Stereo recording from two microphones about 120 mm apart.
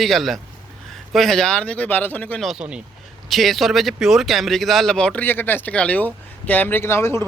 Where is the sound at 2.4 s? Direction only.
5° right (ahead or behind).